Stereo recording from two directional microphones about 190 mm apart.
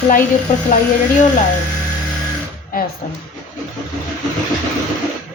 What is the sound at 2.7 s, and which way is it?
Speech, 50° left (ahead or behind).